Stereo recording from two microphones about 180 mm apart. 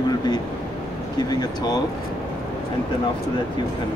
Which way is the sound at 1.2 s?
20° left (ahead or behind).